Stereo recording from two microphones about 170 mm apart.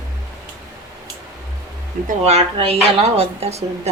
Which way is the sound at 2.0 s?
40° right (ahead or behind).